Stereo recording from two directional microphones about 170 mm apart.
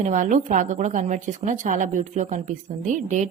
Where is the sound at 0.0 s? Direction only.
45° right (ahead or behind).